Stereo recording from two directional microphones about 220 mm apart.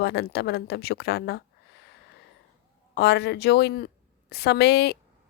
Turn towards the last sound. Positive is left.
turn(degrees=50)  # may be behind; listen again after turning